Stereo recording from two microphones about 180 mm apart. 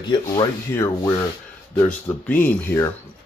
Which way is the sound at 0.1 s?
25° left (ahead or behind).